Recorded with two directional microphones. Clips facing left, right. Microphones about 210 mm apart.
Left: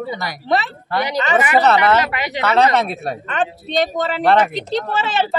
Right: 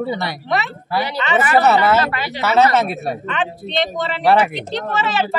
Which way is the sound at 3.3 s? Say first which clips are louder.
Left 2 dB; 45° left (ahead or behind).